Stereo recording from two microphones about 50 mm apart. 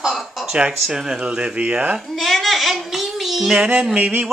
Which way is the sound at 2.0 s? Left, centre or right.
Centre.